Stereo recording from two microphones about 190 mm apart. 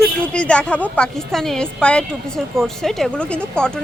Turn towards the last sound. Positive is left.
turn(degrees=5)  # may be behind; listen again after turning